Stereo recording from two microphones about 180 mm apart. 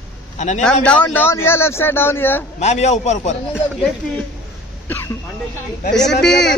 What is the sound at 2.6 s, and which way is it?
Speech, 40° left (ahead or behind).